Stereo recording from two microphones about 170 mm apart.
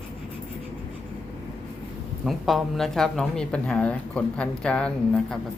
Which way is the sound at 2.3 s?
Centre (ahead or behind).